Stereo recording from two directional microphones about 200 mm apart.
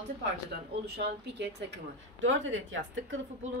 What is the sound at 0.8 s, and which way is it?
A woman's voice, 55° right (ahead or behind).